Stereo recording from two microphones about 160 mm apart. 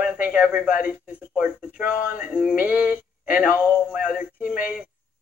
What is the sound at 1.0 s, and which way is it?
Speech, 5° right (ahead or behind).